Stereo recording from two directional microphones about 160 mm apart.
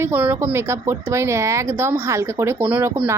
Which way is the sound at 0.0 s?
15° right (ahead or behind).